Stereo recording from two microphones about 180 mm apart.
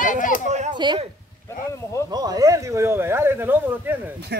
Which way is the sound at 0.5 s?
40° right (ahead or behind).